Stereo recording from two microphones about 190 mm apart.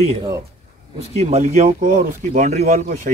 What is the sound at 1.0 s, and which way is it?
Speech, 35° right (ahead or behind).